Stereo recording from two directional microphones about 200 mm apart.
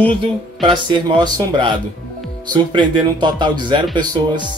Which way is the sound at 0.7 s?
25° right (ahead or behind).